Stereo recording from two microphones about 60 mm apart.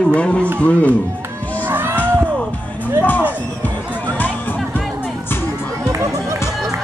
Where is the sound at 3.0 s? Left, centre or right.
Left.